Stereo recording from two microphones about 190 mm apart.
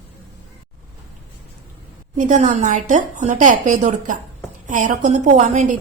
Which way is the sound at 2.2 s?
40° right (ahead or behind).